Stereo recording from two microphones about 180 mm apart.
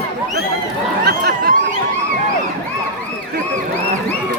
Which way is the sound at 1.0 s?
60° right (ahead or behind).